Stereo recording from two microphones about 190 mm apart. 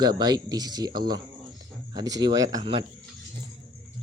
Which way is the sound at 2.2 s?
20° right (ahead or behind).